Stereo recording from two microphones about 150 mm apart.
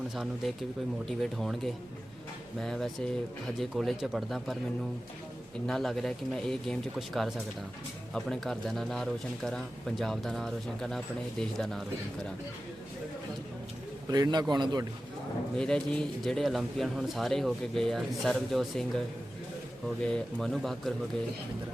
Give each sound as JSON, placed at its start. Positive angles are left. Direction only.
{"t": 0.1, "sound": "speech", "side_deg": 0}
{"t": 5.6, "sound": "speech", "side_deg": 0}
{"t": 14.1, "sound": "a man's voice", "side_deg": -25}
{"t": 15.5, "sound": "speech", "side_deg": 5}